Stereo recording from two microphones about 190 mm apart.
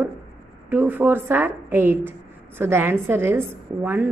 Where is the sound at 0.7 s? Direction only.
10° right (ahead or behind).